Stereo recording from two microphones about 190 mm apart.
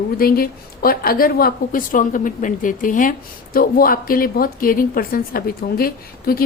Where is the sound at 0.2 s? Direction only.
50° left (ahead or behind).